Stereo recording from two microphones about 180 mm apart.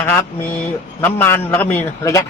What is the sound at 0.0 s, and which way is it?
Speech, 10° left (ahead or behind).